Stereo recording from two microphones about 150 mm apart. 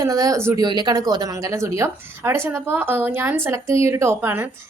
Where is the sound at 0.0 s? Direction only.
25° right (ahead or behind).